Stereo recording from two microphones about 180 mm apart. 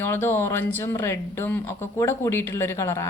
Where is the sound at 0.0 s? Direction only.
10° left (ahead or behind).